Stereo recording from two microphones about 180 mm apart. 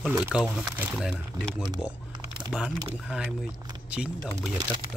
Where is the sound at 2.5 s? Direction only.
5° right (ahead or behind).